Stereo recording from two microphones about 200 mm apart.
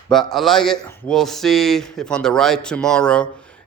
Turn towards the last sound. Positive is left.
turn(degrees=5)  # may be behind; listen again after turning